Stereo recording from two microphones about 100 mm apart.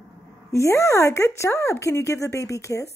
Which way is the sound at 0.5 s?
30° left (ahead or behind).